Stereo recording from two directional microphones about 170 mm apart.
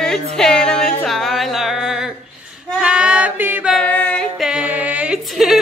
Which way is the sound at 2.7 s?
5° right (ahead or behind).